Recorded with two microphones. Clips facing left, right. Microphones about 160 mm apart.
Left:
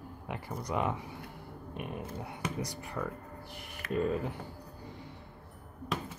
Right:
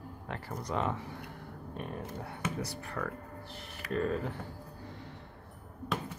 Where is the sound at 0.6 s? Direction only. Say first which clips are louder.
Left 1 dB; 10° left (ahead or behind).